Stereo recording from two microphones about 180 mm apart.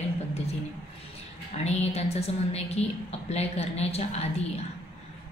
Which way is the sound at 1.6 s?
35° left (ahead or behind).